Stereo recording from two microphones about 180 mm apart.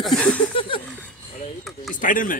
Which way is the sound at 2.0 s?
50° left (ahead or behind).